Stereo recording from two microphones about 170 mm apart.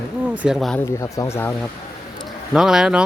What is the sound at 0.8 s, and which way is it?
Speech, 15° left (ahead or behind).